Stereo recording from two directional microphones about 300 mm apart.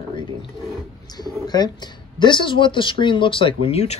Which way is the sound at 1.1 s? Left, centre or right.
Centre.